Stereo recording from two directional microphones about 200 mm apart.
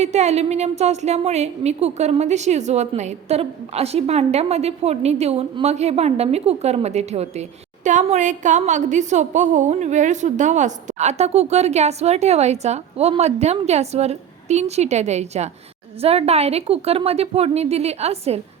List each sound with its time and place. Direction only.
0.0 s a woman's voice: 35° right (ahead or behind)